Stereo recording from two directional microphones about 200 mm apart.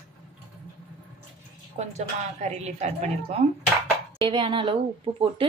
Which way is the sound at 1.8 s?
35° right (ahead or behind).